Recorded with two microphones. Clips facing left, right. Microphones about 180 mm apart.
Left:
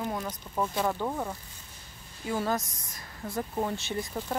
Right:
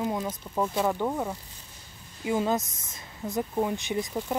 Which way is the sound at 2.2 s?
15° right (ahead or behind).